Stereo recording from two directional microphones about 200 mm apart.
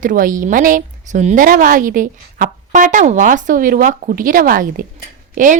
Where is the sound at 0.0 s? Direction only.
40° right (ahead or behind).